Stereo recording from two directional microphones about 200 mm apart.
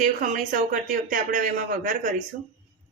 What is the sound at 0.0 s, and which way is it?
Speech, 40° right (ahead or behind).